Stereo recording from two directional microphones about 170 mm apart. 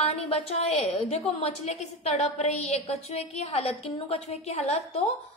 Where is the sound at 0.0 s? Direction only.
35° left (ahead or behind).